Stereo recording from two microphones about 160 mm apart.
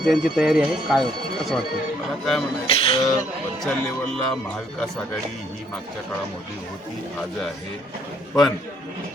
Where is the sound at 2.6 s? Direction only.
35° left (ahead or behind).